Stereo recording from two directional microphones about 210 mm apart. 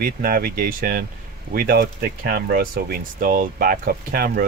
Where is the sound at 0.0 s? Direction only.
45° right (ahead or behind).